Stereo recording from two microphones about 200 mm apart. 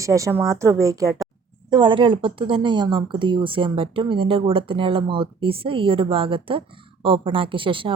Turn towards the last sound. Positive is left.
turn(degrees=-25)  # may be behind; listen again after turning